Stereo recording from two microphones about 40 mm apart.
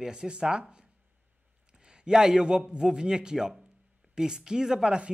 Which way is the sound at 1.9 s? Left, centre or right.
Centre.